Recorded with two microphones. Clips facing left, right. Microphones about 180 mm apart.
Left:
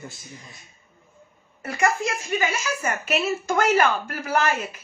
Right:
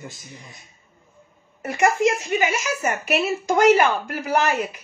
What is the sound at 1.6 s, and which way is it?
A child's voice, 20° right (ahead or behind).